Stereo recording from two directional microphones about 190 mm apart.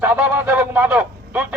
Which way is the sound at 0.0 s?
10° right (ahead or behind).